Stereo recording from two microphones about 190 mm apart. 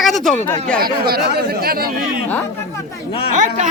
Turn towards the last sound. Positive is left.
turn(degrees=-40)  # may be behind; listen again after turning